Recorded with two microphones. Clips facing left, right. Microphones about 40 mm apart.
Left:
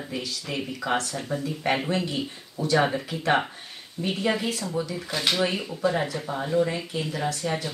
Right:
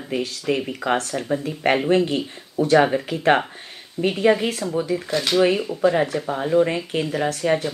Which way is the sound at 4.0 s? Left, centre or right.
Right.